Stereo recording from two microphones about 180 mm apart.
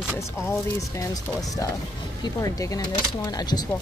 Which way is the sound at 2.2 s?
20° left (ahead or behind).